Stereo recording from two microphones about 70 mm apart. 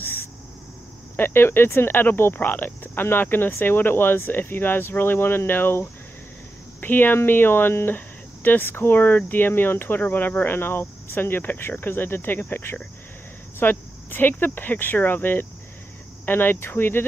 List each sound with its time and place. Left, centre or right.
1.1 s speech: left